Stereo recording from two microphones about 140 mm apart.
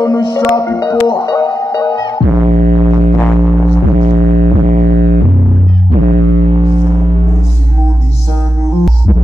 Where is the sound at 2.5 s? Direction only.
80° right.